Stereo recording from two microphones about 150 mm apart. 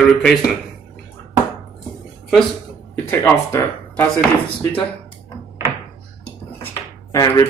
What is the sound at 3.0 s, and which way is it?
Speech, 15° left (ahead or behind).